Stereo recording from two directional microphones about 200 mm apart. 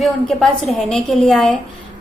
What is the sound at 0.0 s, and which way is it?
A woman's voice, centre (ahead or behind).